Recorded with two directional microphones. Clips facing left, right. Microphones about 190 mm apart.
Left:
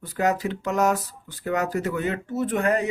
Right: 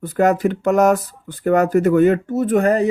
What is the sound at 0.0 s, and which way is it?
Speech, 55° right (ahead or behind).